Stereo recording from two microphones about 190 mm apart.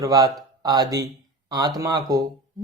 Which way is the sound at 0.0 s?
20° right (ahead or behind).